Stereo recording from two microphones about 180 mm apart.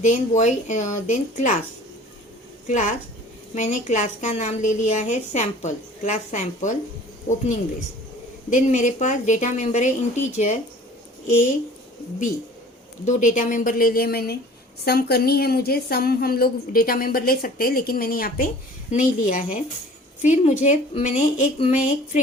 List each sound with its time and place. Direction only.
0.0 s speech: 40° left (ahead or behind)
2.6 s a woman's voice: 40° left (ahead or behind)
8.4 s a woman's voice: 45° left (ahead or behind)
13.1 s a woman's voice: 45° left (ahead or behind)
18.9 s a woman's voice: 45° left (ahead or behind)